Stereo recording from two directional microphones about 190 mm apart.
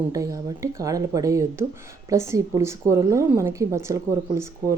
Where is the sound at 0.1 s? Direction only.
15° right (ahead or behind).